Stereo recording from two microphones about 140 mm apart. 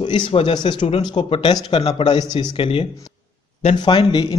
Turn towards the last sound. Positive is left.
turn(degrees=35)  # may be behind; listen again after turning